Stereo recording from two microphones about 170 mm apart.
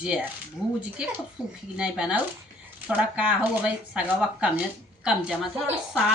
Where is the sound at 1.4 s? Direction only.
5° right (ahead or behind).